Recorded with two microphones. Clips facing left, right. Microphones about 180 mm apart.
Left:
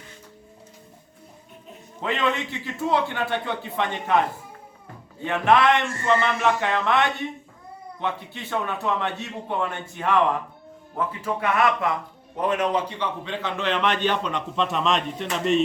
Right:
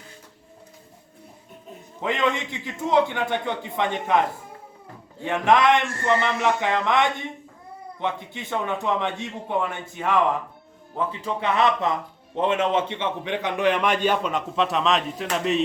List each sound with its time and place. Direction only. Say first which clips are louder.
2.0 s a man's voice: right 1 dB; 15° right (ahead or behind)
5.2 s a man's voice: even; 15° right (ahead or behind)
10.9 s a man's voice: even; 20° right (ahead or behind); by 15.6 s centre (ahead or behind)